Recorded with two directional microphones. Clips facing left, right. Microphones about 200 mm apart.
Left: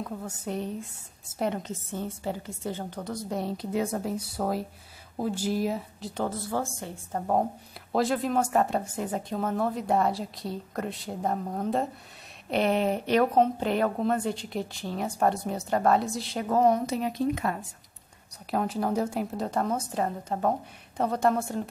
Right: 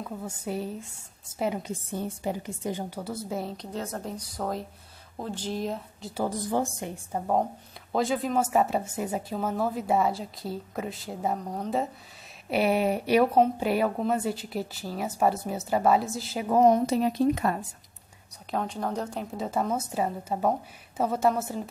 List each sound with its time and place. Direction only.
0.0 s a woman's voice: 5° right (ahead or behind)
3.7 s speech: 10° left (ahead or behind)
6.2 s a woman's voice: 15° right (ahead or behind)
7.9 s a woman's voice: centre (ahead or behind); by 16.8 s 15° right (ahead or behind)
16.8 s speech: 35° right (ahead or behind)
18.3 s a woman's voice: 5° left (ahead or behind)